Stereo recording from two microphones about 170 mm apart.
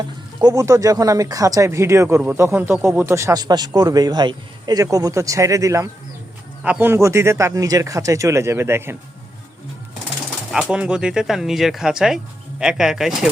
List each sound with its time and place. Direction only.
0.3 s speech: 20° right (ahead or behind)
10.5 s speech: 5° right (ahead or behind)